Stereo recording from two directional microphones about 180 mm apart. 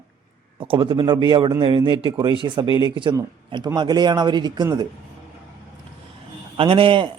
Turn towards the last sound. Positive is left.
turn(degrees=-30)  # may be behind; listen again after turning